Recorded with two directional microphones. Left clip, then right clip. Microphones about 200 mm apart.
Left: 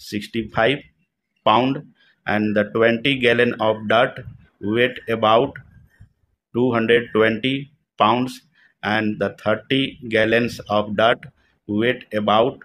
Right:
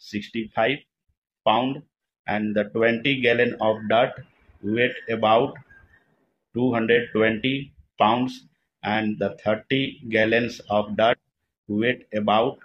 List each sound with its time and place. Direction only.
0.0 s speech: 30° left (ahead or behind)